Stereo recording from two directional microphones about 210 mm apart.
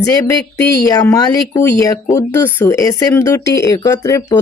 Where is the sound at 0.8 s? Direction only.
15° left (ahead or behind).